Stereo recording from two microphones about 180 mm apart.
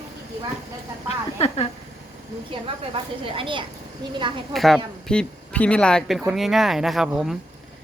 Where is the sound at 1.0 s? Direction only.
35° left (ahead or behind).